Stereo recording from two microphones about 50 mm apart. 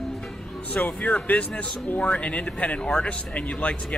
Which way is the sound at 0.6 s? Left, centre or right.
Left.